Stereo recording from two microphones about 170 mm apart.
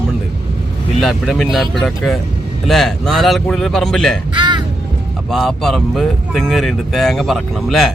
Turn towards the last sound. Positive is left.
turn(degrees=0)  # may be behind; listen again after turning